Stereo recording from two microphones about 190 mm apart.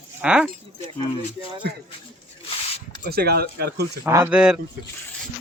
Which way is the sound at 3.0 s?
55° right (ahead or behind).